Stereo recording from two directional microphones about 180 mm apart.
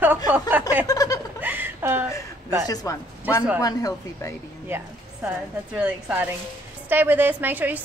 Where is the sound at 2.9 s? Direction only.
20° left (ahead or behind).